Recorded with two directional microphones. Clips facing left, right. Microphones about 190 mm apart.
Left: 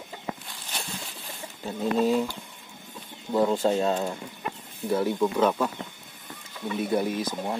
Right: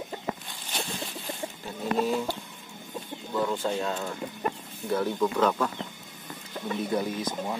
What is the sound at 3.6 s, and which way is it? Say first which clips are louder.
Speech: left 6 dB; 30° left (ahead or behind).